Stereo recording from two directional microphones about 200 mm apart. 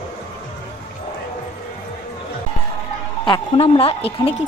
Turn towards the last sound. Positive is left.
turn(degrees=30)  # may be behind; listen again after turning